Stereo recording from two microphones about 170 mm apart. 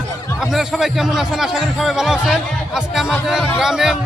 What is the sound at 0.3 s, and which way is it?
Speech, 5° right (ahead or behind).